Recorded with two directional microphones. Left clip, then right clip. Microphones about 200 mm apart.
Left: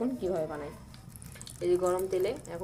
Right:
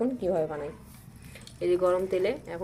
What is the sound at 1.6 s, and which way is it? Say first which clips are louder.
Speech: right 3 dB; 10° right (ahead or behind).